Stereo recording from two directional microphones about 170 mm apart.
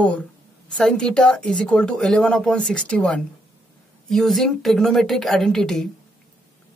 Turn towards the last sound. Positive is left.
turn(degrees=0)  # may be behind; listen again after turning